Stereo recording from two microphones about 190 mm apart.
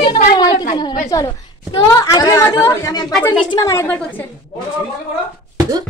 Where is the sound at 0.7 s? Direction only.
25° left (ahead or behind).